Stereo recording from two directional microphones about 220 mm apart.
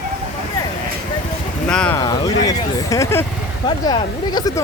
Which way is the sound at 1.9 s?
15° left (ahead or behind).